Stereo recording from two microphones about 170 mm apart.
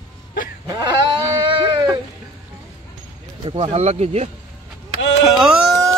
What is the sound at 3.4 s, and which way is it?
Speech, 35° right (ahead or behind).